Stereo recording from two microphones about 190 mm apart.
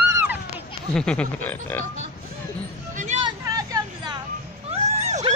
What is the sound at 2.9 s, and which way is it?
Hubbub, 40° right (ahead or behind).